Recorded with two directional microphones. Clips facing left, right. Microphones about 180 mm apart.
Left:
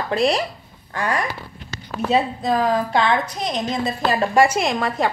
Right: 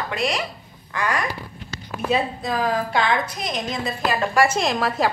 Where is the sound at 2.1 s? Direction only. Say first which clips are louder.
Left 4 dB; 35° left (ahead or behind).